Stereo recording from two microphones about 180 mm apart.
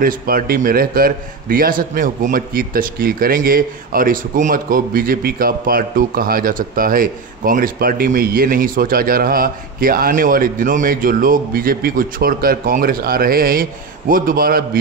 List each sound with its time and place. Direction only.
0.0 s a man's voice: 55° right (ahead or behind)